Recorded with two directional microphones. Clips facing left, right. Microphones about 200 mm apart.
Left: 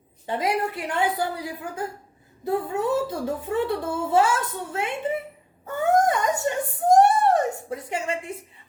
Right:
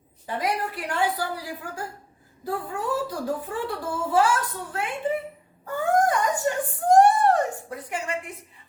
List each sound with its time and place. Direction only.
0.3 s a child's voice: 25° left (ahead or behind)